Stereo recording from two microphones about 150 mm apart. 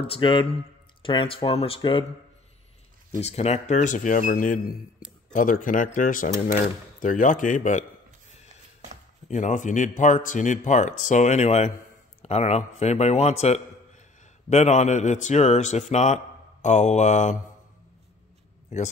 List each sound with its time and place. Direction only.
0.0 s speech: 35° left (ahead or behind)
3.2 s speech: 45° left (ahead or behind)
9.3 s a man's voice: 55° left (ahead or behind)